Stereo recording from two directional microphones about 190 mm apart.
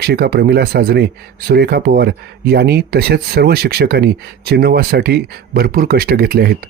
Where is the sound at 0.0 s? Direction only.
55° right (ahead or behind).